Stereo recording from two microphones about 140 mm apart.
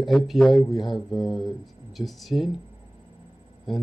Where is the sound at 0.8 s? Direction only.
30° left (ahead or behind).